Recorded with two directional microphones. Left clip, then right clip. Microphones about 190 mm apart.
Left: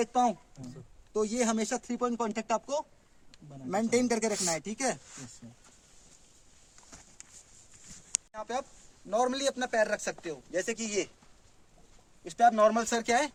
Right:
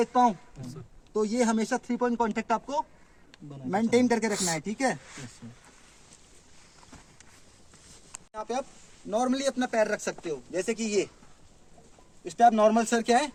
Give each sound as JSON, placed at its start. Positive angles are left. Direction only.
{"t": 0.0, "sound": "speech", "side_deg": 10}
{"t": 3.3, "sound": "a sound", "side_deg": 65}
{"t": 3.7, "sound": "speech", "side_deg": 10}
{"t": 8.3, "sound": "a man's voice", "side_deg": 30}
{"t": 12.2, "sound": "speech", "side_deg": 15}